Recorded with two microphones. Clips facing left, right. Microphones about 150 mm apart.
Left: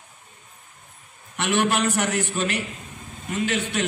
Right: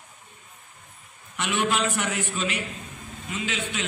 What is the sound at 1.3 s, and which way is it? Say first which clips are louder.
A man's voice: left 3 dB; 65° left (ahead or behind).